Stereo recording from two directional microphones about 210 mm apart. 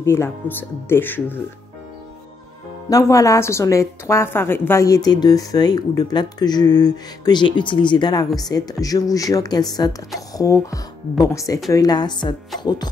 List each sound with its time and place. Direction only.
0.0 s a woman's voice: 10° left (ahead or behind)
2.9 s a woman's voice: 15° left (ahead or behind)